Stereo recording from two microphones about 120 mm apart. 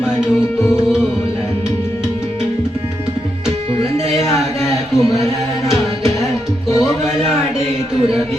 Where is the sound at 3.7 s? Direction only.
60° right (ahead or behind).